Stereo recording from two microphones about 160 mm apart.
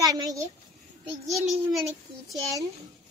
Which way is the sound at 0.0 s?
20° right (ahead or behind).